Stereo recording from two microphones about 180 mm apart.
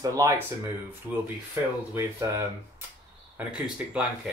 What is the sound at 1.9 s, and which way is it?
Speech, 15° right (ahead or behind).